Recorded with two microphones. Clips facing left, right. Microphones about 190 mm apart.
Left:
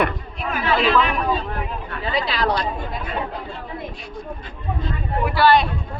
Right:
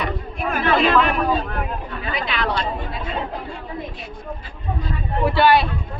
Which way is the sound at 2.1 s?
35° left (ahead or behind).